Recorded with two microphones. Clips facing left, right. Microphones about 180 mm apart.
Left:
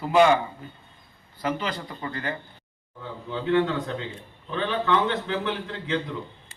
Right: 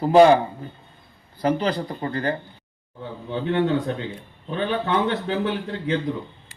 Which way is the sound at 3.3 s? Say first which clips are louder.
Right 1 dB; 20° right (ahead or behind).